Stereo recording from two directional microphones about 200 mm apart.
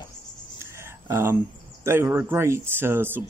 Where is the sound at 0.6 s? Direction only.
15° right (ahead or behind).